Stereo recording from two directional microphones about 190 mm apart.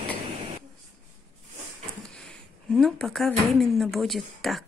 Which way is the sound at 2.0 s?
Centre (ahead or behind).